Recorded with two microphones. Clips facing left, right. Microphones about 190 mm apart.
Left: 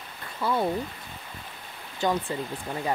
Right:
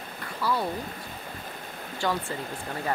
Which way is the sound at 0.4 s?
25° left (ahead or behind).